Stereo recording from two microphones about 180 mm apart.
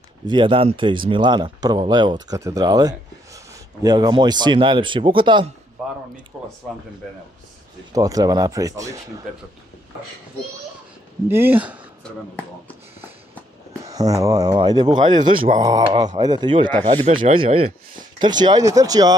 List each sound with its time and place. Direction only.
0.3 s speech: 25° right (ahead or behind)
6.3 s speech: 5° right (ahead or behind)
7.9 s speech: 20° right (ahead or behind)
11.2 s speech: 10° right (ahead or behind)
13.8 s speech: 20° right (ahead or behind)